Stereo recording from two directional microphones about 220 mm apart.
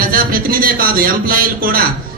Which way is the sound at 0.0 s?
40° right (ahead or behind).